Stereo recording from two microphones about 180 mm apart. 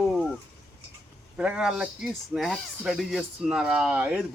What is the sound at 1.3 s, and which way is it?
Speech, 5° right (ahead or behind).